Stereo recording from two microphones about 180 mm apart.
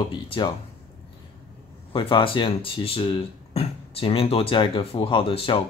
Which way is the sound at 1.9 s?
30° left (ahead or behind).